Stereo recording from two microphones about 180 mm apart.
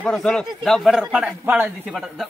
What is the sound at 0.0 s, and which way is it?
Speech, 5° left (ahead or behind).